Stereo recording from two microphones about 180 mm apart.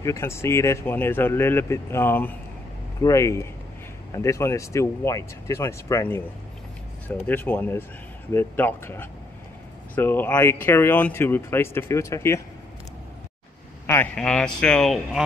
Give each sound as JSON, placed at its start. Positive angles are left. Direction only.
{"t": 0.0, "sound": "speech", "side_deg": 15}
{"t": 13.8, "sound": "a man's voice", "side_deg": 10}